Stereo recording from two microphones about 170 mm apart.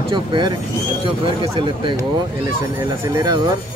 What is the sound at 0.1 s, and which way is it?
Speech, 25° right (ahead or behind).